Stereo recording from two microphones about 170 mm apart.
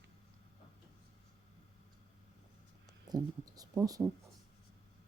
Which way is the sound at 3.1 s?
20° right (ahead or behind).